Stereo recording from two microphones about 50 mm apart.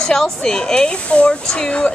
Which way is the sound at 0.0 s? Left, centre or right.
Centre.